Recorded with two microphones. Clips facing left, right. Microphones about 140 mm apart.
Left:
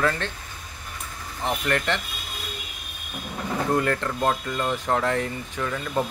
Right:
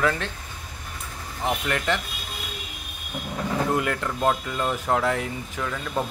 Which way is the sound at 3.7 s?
5° right (ahead or behind).